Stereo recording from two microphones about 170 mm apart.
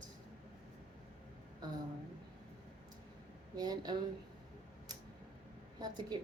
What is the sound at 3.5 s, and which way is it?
Speech, 25° right (ahead or behind).